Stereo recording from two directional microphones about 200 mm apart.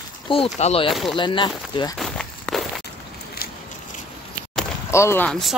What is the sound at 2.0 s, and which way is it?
Walk, 5° left (ahead or behind).